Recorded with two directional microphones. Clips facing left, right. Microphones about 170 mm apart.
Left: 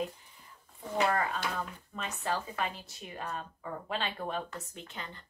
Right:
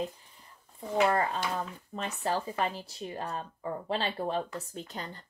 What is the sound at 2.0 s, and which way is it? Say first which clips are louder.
Speech: right 3 dB; 35° right (ahead or behind).